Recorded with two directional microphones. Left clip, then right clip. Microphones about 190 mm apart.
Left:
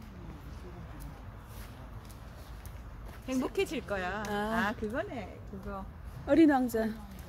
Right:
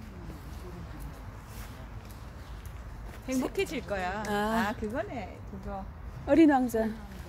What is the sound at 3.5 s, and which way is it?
Speech, 30° left (ahead or behind).